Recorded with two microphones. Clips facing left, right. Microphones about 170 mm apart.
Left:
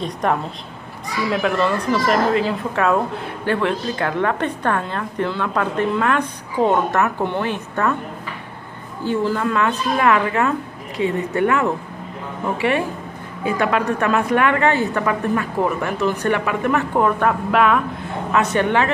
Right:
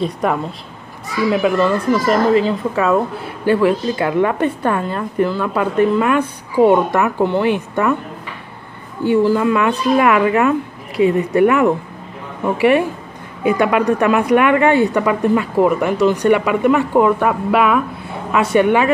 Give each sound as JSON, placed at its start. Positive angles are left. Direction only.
{"t": 0.0, "sound": "a woman's voice", "side_deg": -5}
{"t": 9.0, "sound": "a woman's voice", "side_deg": -15}
{"t": 13.4, "sound": "a woman's voice", "side_deg": -15}